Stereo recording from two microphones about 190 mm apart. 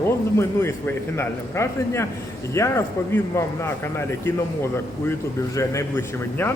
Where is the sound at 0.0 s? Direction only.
10° left (ahead or behind).